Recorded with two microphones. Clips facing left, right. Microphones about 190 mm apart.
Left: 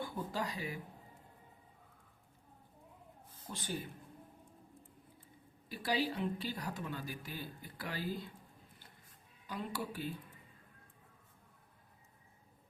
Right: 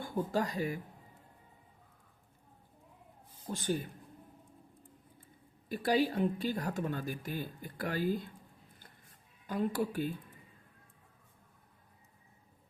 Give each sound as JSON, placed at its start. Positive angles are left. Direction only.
{"t": 0.0, "sound": "speech", "side_deg": -45}
{"t": 3.5, "sound": "speech", "side_deg": -45}
{"t": 5.6, "sound": "speech", "side_deg": -50}
{"t": 9.5, "sound": "speech", "side_deg": -50}